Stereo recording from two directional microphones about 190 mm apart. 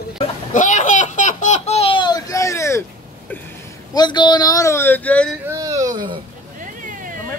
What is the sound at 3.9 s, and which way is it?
Speech, 25° left (ahead or behind).